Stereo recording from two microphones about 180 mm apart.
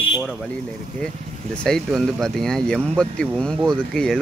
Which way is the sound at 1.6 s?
5° left (ahead or behind).